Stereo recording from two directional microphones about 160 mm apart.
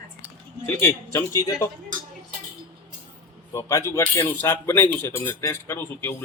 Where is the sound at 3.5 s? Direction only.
20° left (ahead or behind).